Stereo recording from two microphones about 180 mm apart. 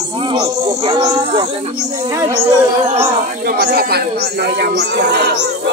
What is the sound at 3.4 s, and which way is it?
Speech, 60° right (ahead or behind).